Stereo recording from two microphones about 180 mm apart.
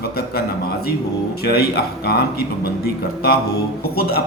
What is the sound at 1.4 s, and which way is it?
Speech, 60° left (ahead or behind).